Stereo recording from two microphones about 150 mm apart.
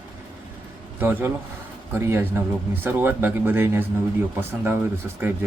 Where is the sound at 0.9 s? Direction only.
15° right (ahead or behind).